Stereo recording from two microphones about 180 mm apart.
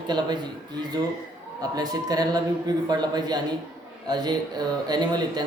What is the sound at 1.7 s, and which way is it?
Speech, 20° right (ahead or behind).